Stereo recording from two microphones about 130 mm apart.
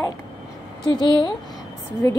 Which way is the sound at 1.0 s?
35° left (ahead or behind).